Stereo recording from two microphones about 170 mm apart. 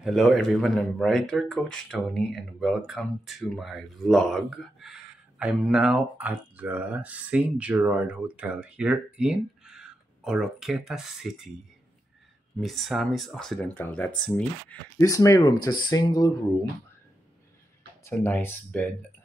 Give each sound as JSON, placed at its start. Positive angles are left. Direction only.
{"t": 0.0, "sound": "speech", "side_deg": 0}
{"t": 12.5, "sound": "speech", "side_deg": 0}
{"t": 15.0, "sound": "speech", "side_deg": 20}
{"t": 18.0, "sound": "speech", "side_deg": 10}